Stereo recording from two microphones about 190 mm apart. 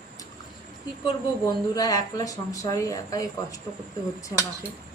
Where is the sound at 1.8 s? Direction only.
20° left (ahead or behind).